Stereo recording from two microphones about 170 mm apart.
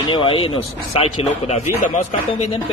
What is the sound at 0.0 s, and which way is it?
Speech, 30° left (ahead or behind).